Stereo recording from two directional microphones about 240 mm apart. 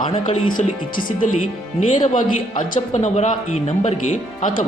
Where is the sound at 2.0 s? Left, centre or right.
Left.